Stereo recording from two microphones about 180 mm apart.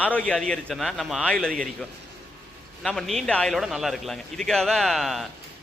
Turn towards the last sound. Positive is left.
turn(degrees=0)  # may be behind; listen again after turning